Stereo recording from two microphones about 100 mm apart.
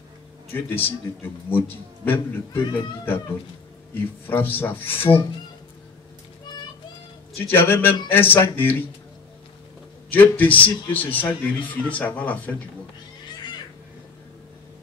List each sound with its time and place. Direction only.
0.6 s speech: 20° left (ahead or behind)
3.9 s speech: 20° left (ahead or behind)
7.3 s speech: 20° left (ahead or behind)
10.1 s a man's voice: 15° left (ahead or behind)